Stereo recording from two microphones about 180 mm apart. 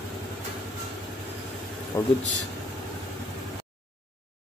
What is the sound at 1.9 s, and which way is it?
Speech, 15° left (ahead or behind).